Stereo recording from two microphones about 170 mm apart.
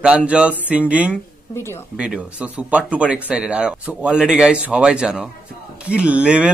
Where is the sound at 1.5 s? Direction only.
15° left (ahead or behind).